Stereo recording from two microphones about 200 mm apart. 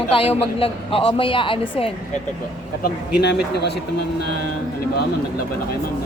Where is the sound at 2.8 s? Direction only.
55° left (ahead or behind).